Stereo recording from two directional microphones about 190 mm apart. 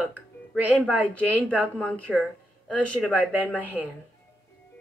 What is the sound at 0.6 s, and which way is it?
Speech, 10° right (ahead or behind).